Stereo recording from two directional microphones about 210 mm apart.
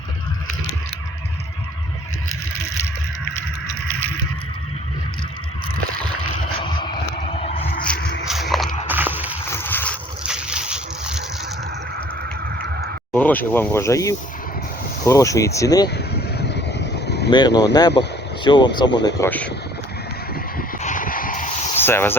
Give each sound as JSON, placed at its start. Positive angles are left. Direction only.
{"t": 6.6, "sound": "vehicle", "side_deg": 20}
{"t": 7.5, "sound": "music", "side_deg": 40}
{"t": 8.2, "sound": "biting", "side_deg": 0}
{"t": 8.9, "sound": "a sound", "side_deg": -10}
{"t": 9.5, "sound": "boat", "side_deg": 10}
{"t": 13.1, "sound": "speech", "side_deg": 5}
{"t": 16.0, "sound": "vehicle", "side_deg": 50}
{"t": 17.3, "sound": "speech", "side_deg": 20}
{"t": 20.3, "sound": "a sound", "side_deg": 40}
{"t": 21.8, "sound": "speech", "side_deg": 10}